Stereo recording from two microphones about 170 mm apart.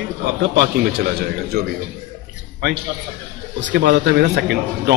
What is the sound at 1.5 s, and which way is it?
Speech, 65° right (ahead or behind).